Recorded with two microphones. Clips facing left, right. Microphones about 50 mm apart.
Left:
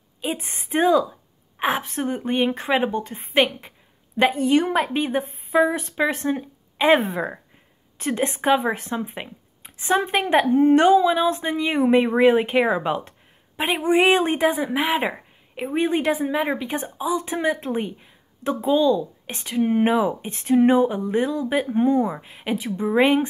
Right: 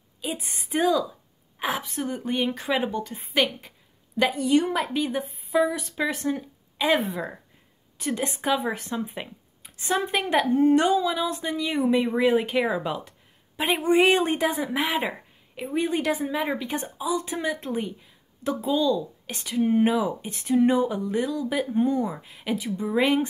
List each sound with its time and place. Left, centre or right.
0.2 s a woman's voice: left
13.7 s speech: centre
15.6 s speech: left